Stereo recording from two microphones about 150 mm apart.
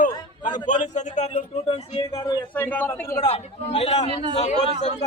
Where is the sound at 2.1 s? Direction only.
25° left (ahead or behind).